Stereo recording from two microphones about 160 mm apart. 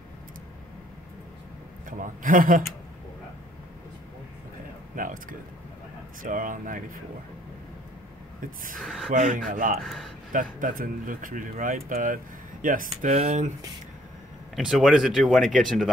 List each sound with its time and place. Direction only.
1.9 s speech: 55° right (ahead or behind)
4.9 s a sound: 55° right (ahead or behind)
6.2 s speech: 55° right (ahead or behind)
8.7 s speech: centre (ahead or behind)
9.1 s speech: 55° right (ahead or behind)
9.8 s speech: centre (ahead or behind)
10.3 s speech: 60° right (ahead or behind)
14.5 s speech: centre (ahead or behind)